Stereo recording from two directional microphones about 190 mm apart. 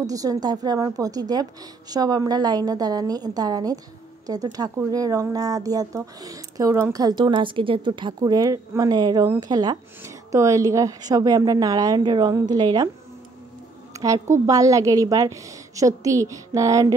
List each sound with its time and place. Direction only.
0.0 s speech: 20° right (ahead or behind)
13.9 s a woman's voice: 15° right (ahead or behind)